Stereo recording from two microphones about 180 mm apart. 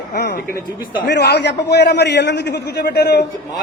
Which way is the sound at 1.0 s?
70° left (ahead or behind).